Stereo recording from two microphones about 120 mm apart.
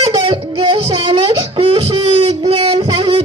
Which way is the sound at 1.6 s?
55° right (ahead or behind).